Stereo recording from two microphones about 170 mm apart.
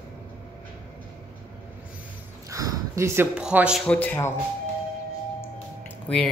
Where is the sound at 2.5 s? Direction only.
20° right (ahead or behind).